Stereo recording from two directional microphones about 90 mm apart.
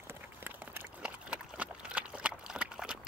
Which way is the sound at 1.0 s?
10° right (ahead or behind).